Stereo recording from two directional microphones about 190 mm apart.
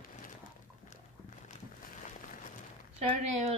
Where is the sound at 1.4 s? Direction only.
40° left (ahead or behind).